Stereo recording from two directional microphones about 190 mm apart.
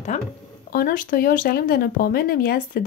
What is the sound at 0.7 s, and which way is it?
Speech, 50° left (ahead or behind).